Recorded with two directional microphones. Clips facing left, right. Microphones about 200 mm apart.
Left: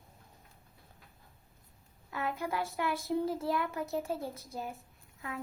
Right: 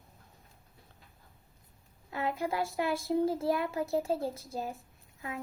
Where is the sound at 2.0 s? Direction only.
25° right (ahead or behind).